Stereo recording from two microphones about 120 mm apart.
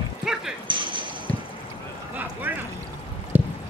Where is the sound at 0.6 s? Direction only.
45° right (ahead or behind).